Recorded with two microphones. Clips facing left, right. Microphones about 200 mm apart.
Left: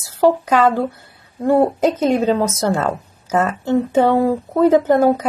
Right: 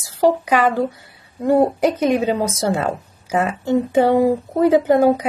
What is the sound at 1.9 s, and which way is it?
A woman's voice, 15° right (ahead or behind).